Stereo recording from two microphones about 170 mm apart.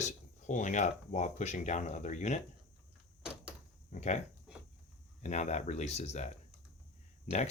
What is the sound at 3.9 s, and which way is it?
Speech, 45° left (ahead or behind).